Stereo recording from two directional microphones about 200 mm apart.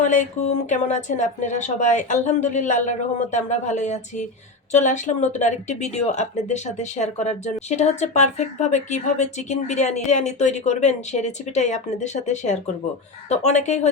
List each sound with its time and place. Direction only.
0.0 s a woman's voice: 40° left (ahead or behind)